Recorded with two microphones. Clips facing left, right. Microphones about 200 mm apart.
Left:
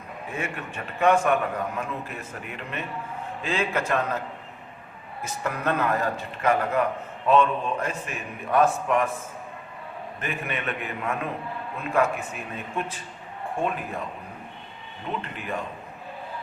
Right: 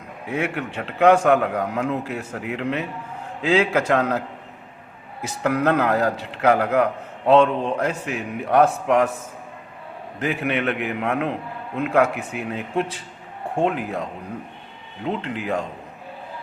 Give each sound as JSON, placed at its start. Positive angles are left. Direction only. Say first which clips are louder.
{"t": 0.3, "sound": "a man's voice", "louder": "right 8 dB", "side_deg": -75}
{"t": 5.2, "sound": "a man's voice", "louder": "right 8 dB", "side_deg": -80}
{"t": 10.2, "sound": "a man's voice", "louder": "right 9 dB", "side_deg": -80}
{"t": 15.0, "sound": "speech", "louder": "right 7 dB", "side_deg": -90}